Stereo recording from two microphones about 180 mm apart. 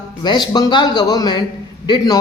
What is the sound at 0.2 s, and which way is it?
A man's voice, 25° left (ahead or behind).